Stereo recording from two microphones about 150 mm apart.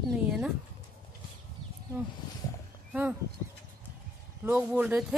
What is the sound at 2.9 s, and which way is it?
Speech, 10° right (ahead or behind).